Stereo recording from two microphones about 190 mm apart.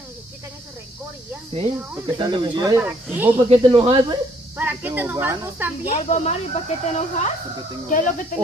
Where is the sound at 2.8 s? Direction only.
10° right (ahead or behind).